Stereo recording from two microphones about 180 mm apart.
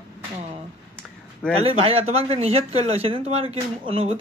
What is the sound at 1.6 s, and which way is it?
Speech, 30° right (ahead or behind).